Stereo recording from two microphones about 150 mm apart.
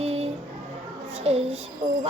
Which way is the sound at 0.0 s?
45° right (ahead or behind).